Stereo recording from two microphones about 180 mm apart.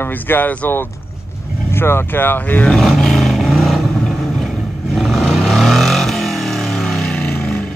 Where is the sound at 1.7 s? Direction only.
10° left (ahead or behind).